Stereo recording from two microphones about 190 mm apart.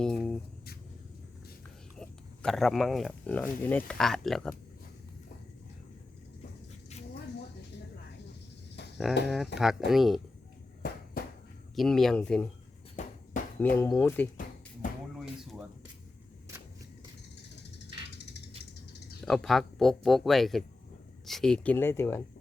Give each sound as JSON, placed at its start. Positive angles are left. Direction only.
{"t": 0.0, "sound": "a sound", "side_deg": 5}
{"t": 2.0, "sound": "speech", "side_deg": 5}
{"t": 9.2, "sound": "speech", "side_deg": 0}
{"t": 10.8, "sound": "a sound", "side_deg": 55}
{"t": 11.7, "sound": "speech", "side_deg": 0}
{"t": 13.0, "sound": "bouncing", "side_deg": 40}
{"t": 13.6, "sound": "speech", "side_deg": 10}
{"t": 14.8, "sound": "music", "side_deg": 45}
{"t": 15.2, "sound": "a sound", "side_deg": 0}
{"t": 19.2, "sound": "speech", "side_deg": 0}